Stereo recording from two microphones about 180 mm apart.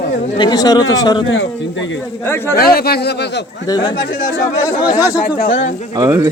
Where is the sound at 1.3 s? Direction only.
90° left.